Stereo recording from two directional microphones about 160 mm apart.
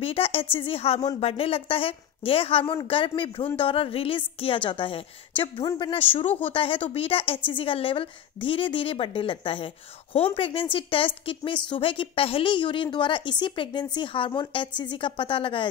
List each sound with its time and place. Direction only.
0.0 s a woman's voice: 35° left (ahead or behind)